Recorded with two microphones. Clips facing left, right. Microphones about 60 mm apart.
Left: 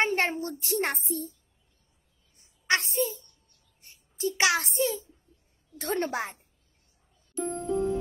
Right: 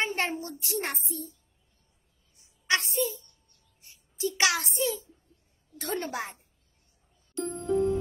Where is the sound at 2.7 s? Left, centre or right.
Left.